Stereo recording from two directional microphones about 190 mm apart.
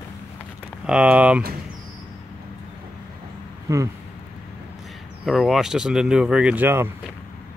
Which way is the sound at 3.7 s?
15° right (ahead or behind).